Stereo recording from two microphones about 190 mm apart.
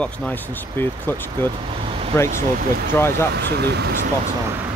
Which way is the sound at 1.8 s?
30° right (ahead or behind).